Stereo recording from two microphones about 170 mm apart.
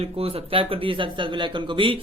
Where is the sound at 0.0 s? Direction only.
35° right (ahead or behind).